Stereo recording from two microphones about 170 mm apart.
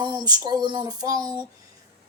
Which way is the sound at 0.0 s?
25° right (ahead or behind).